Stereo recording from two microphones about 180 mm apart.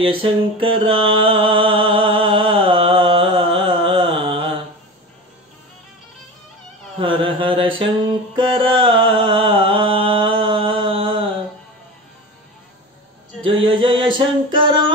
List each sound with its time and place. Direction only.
0.0 s mantra: 30° right (ahead or behind)
3.5 s carnatic music: 30° right (ahead or behind)
7.0 s mantra: 25° right (ahead or behind)
8.4 s music: 25° right (ahead or behind)
13.7 s a sound: 25° right (ahead or behind)